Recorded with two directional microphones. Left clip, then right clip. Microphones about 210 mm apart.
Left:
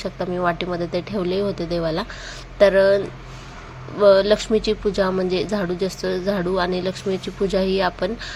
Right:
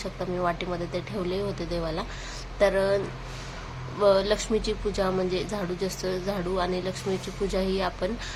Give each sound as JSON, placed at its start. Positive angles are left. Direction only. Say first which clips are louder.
{"t": 0.0, "sound": "a woman's voice", "louder": "left 6 dB", "side_deg": 25}
{"t": 4.0, "sound": "a woman's voice", "louder": "left 8 dB", "side_deg": 20}